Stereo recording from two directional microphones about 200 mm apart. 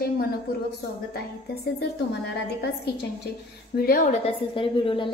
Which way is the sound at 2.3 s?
55° left (ahead or behind).